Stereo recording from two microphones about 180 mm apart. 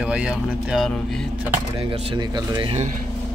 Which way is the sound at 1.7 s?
35° right (ahead or behind).